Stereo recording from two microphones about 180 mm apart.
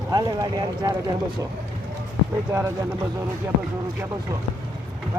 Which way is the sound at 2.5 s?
15° right (ahead or behind).